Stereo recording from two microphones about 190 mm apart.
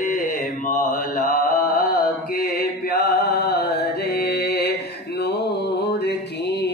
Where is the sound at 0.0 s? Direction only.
45° left (ahead or behind).